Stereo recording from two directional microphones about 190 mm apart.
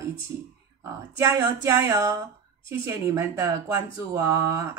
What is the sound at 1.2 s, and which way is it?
Speech, 15° right (ahead or behind).